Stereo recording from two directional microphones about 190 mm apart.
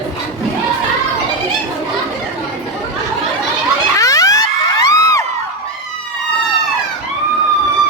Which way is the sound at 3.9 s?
15° left (ahead or behind).